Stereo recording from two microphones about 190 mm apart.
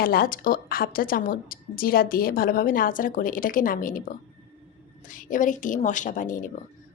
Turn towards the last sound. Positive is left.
turn(degrees=45)  # may be behind; listen again after turning